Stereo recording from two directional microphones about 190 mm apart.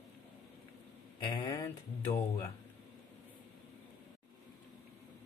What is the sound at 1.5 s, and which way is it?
Speech, 15° left (ahead or behind).